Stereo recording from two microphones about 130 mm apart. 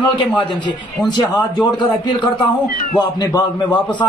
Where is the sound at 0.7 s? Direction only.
35° left (ahead or behind).